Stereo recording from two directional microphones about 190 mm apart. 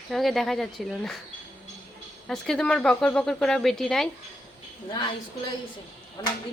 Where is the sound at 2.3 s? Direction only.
5° left (ahead or behind).